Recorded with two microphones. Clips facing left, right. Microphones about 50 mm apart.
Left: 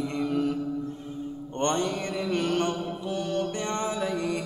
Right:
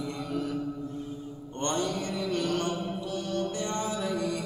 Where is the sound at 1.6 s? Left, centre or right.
Left.